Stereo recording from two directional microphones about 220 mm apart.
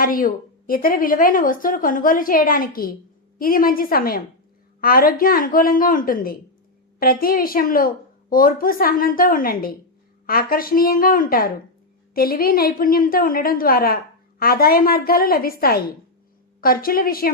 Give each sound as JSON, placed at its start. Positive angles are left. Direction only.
{"t": 0.0, "sound": "a woman's voice", "side_deg": 40}